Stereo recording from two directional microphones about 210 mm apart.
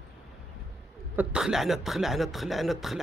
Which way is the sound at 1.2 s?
5° right (ahead or behind).